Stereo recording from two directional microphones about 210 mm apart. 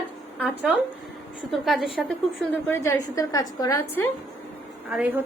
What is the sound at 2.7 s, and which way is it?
A woman's voice, 15° left (ahead or behind).